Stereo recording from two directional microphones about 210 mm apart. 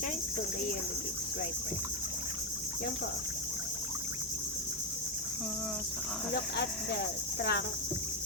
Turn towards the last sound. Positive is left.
turn(degrees=50)  # may be behind; listen again after turning